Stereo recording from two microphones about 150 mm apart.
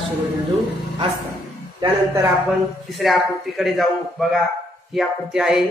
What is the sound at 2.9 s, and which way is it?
A man's voice, centre (ahead or behind).